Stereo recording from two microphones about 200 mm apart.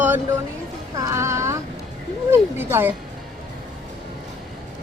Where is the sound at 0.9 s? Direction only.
15° right (ahead or behind).